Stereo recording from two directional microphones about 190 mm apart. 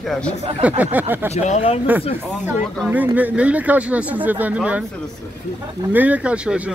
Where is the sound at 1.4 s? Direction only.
35° left (ahead or behind).